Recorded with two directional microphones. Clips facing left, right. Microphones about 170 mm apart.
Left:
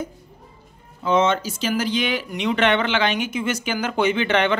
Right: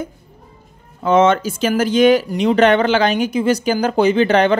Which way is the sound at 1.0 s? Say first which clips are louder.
Right 6 dB; 55° right (ahead or behind).